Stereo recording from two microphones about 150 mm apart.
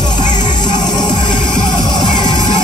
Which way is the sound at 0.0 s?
30° left (ahead or behind).